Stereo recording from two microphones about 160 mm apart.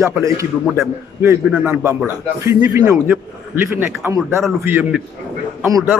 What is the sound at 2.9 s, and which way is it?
A man's voice, 10° right (ahead or behind).